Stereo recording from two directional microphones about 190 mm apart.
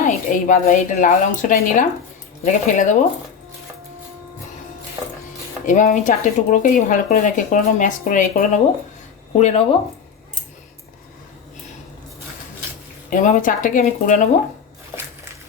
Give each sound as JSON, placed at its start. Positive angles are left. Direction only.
{"t": 0.0, "sound": "speech", "side_deg": 40}
{"t": 5.6, "sound": "speech", "side_deg": 40}
{"t": 13.1, "sound": "speech", "side_deg": 45}